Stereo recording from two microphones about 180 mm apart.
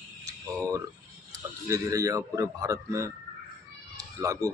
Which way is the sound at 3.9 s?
20° right (ahead or behind).